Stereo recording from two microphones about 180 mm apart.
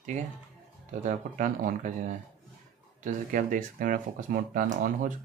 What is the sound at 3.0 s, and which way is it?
Speech, 45° right (ahead or behind).